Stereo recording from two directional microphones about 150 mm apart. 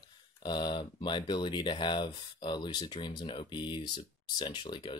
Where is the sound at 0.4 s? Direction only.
30° left (ahead or behind).